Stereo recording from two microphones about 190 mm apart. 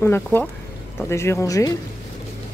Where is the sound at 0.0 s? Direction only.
10° left (ahead or behind).